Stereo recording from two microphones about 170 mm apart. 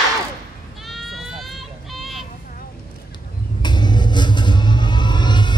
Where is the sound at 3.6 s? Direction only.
25° left (ahead or behind).